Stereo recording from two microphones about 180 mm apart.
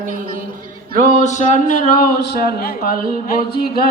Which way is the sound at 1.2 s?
40° left (ahead or behind).